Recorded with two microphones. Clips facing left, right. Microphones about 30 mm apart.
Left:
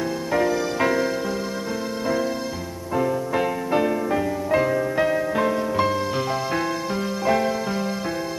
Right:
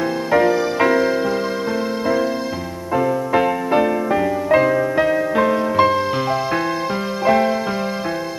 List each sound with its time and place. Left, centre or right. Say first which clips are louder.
0.3 s music: right 6 dB; centre
3.0 s music: right 5 dB; centre
7.2 s music: right 6 dB; centre